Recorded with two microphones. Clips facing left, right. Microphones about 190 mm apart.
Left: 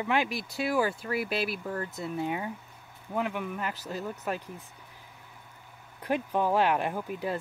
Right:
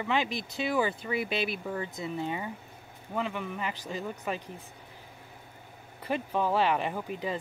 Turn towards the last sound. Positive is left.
turn(degrees=5)  # may be behind; listen again after turning